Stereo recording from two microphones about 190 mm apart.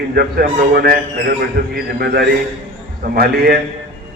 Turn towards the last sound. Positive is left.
turn(degrees=-50)  # may be behind; listen again after turning